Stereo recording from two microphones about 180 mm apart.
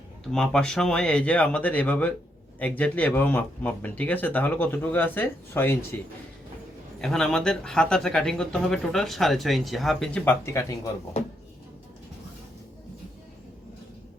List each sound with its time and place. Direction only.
0.3 s speech: 5° left (ahead or behind)
7.0 s speech: centre (ahead or behind)
10.4 s speech: 15° left (ahead or behind)